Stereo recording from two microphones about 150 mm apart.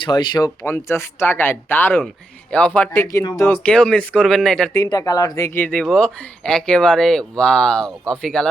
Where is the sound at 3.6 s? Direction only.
10° left (ahead or behind).